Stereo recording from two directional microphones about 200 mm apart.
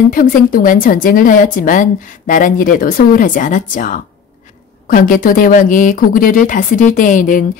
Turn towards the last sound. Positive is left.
turn(degrees=40)  # may be behind; listen again after turning